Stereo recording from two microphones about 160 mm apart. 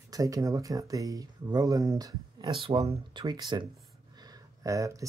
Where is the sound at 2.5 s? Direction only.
35° right (ahead or behind).